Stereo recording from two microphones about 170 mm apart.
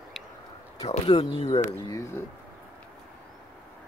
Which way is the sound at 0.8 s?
30° left (ahead or behind).